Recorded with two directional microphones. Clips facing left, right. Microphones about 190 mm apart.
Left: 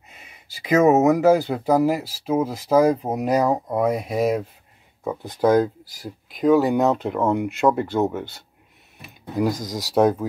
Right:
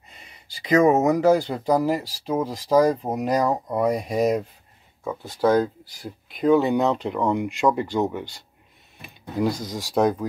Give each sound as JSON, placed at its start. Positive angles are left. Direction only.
{"t": 0.1, "sound": "speech", "side_deg": 5}
{"t": 5.0, "sound": "speech", "side_deg": 15}
{"t": 9.3, "sound": "speech", "side_deg": 15}
{"t": 9.7, "sound": "speech", "side_deg": 40}
{"t": 9.9, "sound": "speech", "side_deg": 5}